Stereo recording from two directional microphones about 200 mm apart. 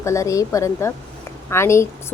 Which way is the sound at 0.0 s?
15° left (ahead or behind).